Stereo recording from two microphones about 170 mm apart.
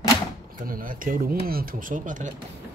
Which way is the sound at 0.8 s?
55° right (ahead or behind).